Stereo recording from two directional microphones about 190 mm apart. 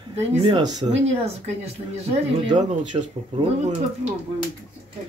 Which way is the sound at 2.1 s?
25° right (ahead or behind).